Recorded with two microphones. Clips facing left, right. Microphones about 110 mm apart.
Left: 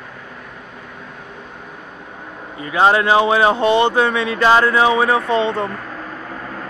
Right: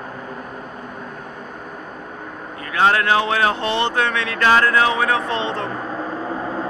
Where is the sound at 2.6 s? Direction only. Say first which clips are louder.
Left 3 dB; 20° left (ahead or behind).